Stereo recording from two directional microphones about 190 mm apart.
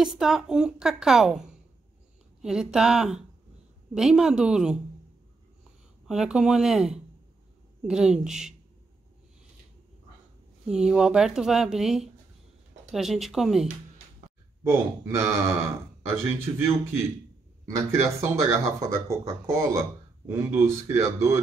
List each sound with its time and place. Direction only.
0.0 s a woman's voice: 5° right (ahead or behind)
6.0 s a woman's voice: 5° right (ahead or behind)
10.7 s a woman's voice: 5° right (ahead or behind)
14.6 s speech: 15° right (ahead or behind)
17.6 s speech: 15° right (ahead or behind)